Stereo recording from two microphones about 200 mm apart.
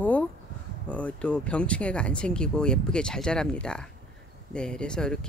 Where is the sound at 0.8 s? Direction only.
5° left (ahead or behind).